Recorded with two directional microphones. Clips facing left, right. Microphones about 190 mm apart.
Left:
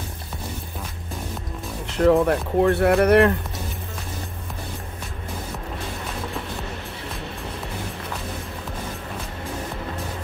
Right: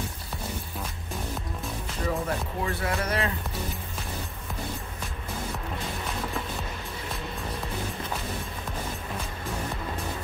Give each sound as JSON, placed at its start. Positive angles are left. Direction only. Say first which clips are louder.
{"t": 1.9, "sound": "speech", "louder": "left 13 dB", "side_deg": 70}